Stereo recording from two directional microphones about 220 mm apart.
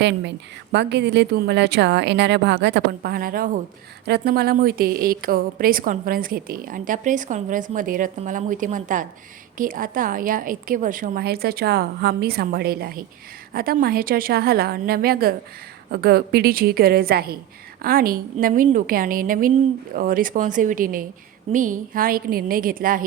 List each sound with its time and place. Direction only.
0.0 s a woman's voice: 50° right (ahead or behind)